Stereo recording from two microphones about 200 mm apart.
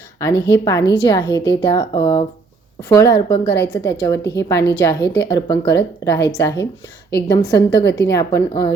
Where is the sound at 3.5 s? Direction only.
55° left (ahead or behind).